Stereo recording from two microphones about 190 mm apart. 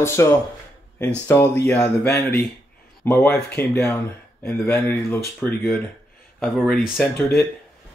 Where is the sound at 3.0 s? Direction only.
10° left (ahead or behind).